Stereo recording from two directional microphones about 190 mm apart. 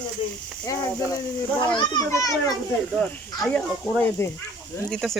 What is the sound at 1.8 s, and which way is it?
Speech, 20° left (ahead or behind).